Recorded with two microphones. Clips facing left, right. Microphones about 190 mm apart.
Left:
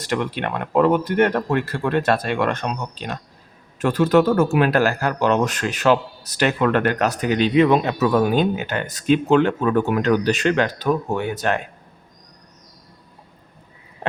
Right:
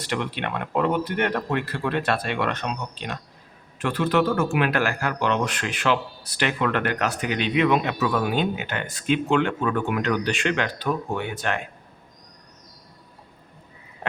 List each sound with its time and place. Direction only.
0.0 s speech: 45° left (ahead or behind)